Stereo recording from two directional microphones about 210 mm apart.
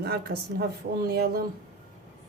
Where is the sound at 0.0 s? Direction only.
50° right (ahead or behind).